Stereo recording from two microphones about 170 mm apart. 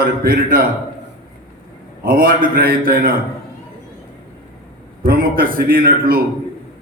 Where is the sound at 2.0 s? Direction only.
55° right (ahead or behind).